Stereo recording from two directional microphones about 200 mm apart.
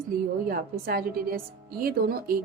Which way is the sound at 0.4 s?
50° right (ahead or behind).